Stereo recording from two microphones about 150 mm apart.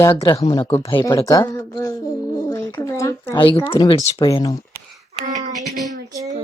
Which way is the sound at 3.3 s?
30° left (ahead or behind).